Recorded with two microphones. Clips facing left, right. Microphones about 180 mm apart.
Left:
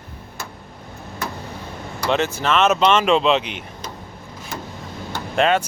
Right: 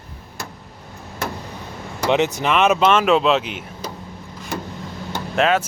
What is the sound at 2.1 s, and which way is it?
Speech, 15° right (ahead or behind).